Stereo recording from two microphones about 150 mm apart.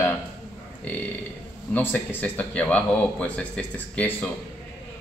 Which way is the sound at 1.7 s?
10° left (ahead or behind).